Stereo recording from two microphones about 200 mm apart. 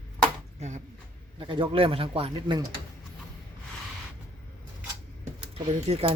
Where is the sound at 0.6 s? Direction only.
35° right (ahead or behind).